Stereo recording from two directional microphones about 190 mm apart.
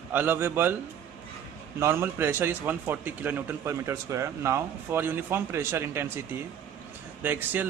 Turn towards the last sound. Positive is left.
turn(degrees=-10)  # may be behind; listen again after turning